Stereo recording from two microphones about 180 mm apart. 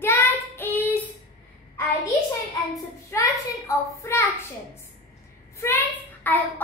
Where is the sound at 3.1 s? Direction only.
15° left (ahead or behind).